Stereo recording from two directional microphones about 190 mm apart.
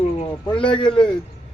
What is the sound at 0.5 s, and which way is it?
Speech, 25° left (ahead or behind).